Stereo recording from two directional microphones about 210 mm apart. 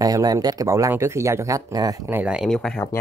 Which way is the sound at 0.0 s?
15° right (ahead or behind).